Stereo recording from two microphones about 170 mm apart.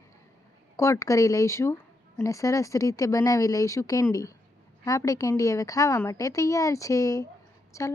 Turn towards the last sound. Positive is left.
turn(degrees=20)  # may be behind; listen again after turning